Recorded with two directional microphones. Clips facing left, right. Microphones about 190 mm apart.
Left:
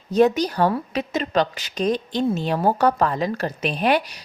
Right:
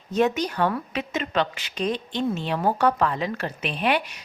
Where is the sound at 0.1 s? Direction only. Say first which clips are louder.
Left 5 dB; 35° left (ahead or behind).